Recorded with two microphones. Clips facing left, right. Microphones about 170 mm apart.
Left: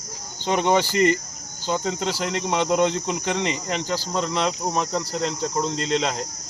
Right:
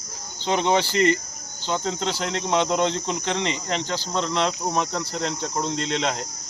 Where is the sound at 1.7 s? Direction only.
5° left (ahead or behind).